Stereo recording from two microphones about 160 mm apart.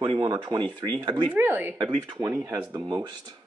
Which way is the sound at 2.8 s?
30° right (ahead or behind).